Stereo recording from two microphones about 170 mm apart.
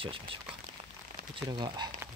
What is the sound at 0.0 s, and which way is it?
Speech, 30° right (ahead or behind).